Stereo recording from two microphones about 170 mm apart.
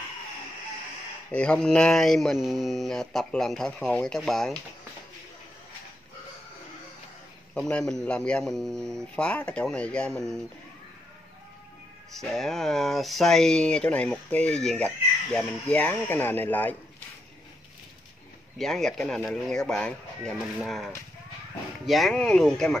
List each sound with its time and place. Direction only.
1.3 s speech: 5° left (ahead or behind)
7.5 s speech: centre (ahead or behind)
12.2 s speech: centre (ahead or behind)
18.6 s speech: centre (ahead or behind)